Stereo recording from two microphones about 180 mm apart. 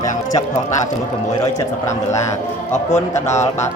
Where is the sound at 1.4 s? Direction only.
15° left (ahead or behind).